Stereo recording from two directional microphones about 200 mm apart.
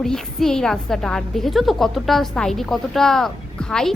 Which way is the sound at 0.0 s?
Centre (ahead or behind).